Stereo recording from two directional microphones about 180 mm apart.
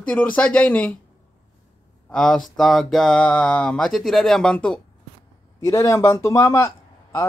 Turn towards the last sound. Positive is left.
turn(degrees=15)  # may be behind; listen again after turning